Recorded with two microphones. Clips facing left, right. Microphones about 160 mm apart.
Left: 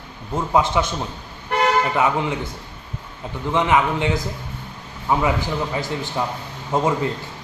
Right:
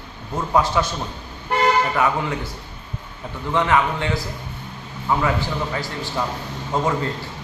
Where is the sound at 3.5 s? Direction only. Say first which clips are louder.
Left 1 dB; 15° left (ahead or behind).